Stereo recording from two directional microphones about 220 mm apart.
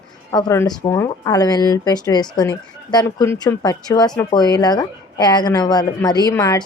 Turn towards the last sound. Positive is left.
turn(degrees=15)  # may be behind; listen again after turning